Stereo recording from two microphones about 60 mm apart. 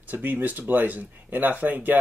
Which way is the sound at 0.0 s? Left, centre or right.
Right.